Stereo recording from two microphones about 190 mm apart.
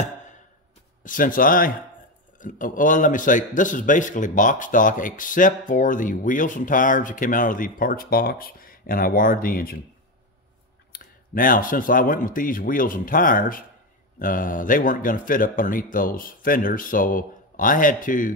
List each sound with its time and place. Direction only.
1.0 s a man's voice: 45° left (ahead or behind)
10.9 s a man's voice: 45° left (ahead or behind)